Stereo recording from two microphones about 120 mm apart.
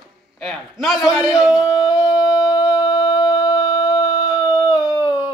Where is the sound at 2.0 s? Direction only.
30° left (ahead or behind).